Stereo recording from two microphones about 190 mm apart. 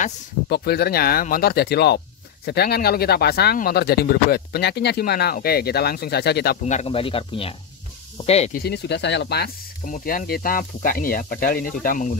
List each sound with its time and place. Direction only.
0.5 s speech: 55° left (ahead or behind)
6.6 s speech: 35° left (ahead or behind)
8.5 s speech: 60° left (ahead or behind)
9.8 s speech: 45° left (ahead or behind)